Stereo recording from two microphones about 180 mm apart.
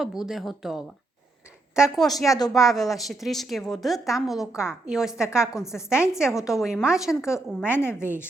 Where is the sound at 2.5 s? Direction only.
Centre (ahead or behind).